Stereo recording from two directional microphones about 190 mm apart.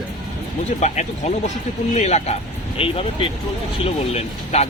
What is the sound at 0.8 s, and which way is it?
Speech, 40° left (ahead or behind).